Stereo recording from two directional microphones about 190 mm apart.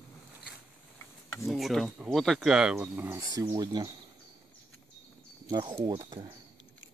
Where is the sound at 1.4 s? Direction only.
Centre (ahead or behind); by 3.9 s 20° right (ahead or behind).